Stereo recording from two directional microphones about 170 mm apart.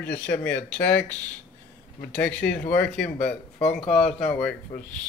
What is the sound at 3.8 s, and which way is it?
Speech, 35° left (ahead or behind).